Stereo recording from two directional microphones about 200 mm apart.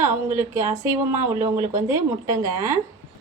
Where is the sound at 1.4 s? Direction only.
35° right (ahead or behind).